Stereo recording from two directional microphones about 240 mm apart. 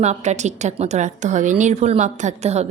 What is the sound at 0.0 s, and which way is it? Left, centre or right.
A woman's voice, right.